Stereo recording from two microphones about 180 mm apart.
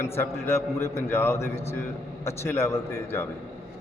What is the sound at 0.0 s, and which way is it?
A man's voice, 15° left (ahead or behind).